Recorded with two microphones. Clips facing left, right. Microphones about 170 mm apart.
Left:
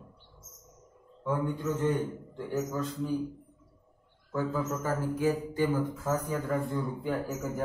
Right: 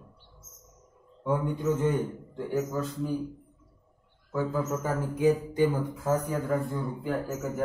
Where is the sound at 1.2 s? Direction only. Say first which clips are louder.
Right 2 dB; 20° right (ahead or behind).